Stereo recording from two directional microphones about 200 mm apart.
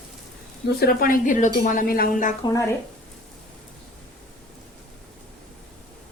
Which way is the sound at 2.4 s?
15° left (ahead or behind).